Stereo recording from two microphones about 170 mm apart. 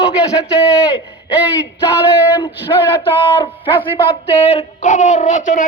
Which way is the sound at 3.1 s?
35° left (ahead or behind).